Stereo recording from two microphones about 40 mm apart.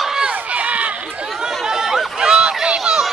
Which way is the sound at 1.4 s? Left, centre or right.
Centre.